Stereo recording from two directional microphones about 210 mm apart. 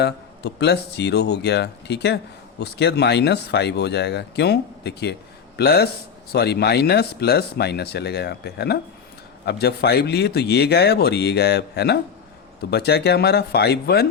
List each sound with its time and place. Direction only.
0.0 s speech: 55° left (ahead or behind)